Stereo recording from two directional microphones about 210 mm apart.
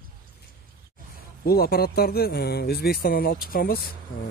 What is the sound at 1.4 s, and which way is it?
Speech, 45° left (ahead or behind).